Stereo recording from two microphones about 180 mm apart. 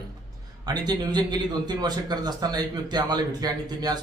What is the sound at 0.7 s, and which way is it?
A man's voice, 25° right (ahead or behind).